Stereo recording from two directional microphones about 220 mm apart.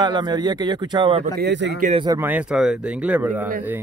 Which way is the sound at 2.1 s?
10° right (ahead or behind).